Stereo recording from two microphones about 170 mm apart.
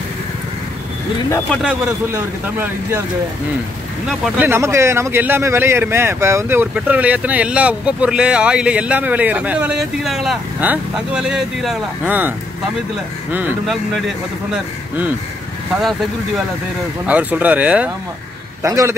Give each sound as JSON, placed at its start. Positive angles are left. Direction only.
{"t": 1.9, "sound": "speech", "side_deg": -15}
{"t": 4.4, "sound": "speech", "side_deg": -15}
{"t": 17.0, "sound": "speech", "side_deg": -10}